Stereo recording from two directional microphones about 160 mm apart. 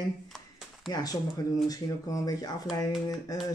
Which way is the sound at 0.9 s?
25° left (ahead or behind).